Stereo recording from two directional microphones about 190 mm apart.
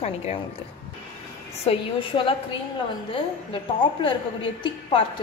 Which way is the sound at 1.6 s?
30° left (ahead or behind).